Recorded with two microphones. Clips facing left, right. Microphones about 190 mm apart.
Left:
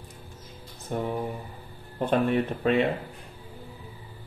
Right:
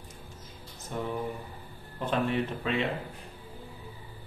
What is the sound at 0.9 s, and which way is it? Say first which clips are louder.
Speech: left 4 dB; 50° left (ahead or behind).